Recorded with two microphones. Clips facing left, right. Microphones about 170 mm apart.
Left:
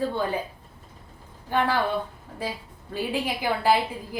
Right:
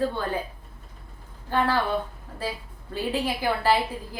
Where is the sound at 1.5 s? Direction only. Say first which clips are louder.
Even; 15° left (ahead or behind).